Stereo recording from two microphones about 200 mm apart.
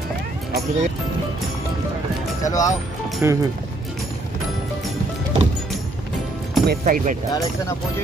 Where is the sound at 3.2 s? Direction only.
10° right (ahead or behind).